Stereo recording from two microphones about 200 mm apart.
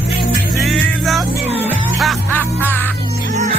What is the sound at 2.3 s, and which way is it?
Music, 10° left (ahead or behind).